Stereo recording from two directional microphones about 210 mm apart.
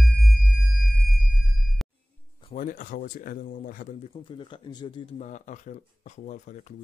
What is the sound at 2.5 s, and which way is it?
Speech, 40° left (ahead or behind).